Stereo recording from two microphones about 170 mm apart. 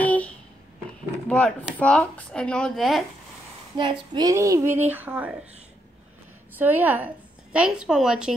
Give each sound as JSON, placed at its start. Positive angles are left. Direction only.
{"t": 0.0, "sound": "a sound", "side_deg": 10}
{"t": 1.3, "sound": "speech", "side_deg": 10}
{"t": 3.7, "sound": "speech", "side_deg": -25}
{"t": 6.6, "sound": "a woman's voice", "side_deg": -10}